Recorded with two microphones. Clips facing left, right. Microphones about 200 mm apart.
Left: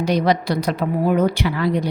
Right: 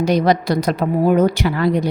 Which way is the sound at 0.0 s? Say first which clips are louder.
Right 3 dB; 45° right (ahead or behind).